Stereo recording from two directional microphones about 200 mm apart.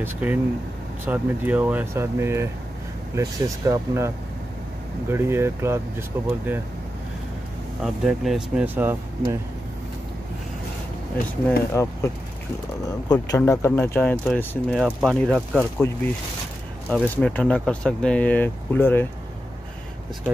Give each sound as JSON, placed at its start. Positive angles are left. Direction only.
{"t": 0.0, "sound": "speech", "side_deg": -10}
{"t": 7.8, "sound": "speech", "side_deg": 0}
{"t": 11.4, "sound": "speech", "side_deg": 10}
{"t": 15.8, "sound": "speech", "side_deg": 65}
{"t": 16.9, "sound": "speech", "side_deg": 5}